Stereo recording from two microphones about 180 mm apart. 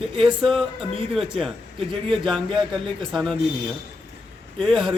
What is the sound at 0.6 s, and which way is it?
Speech, 30° right (ahead or behind).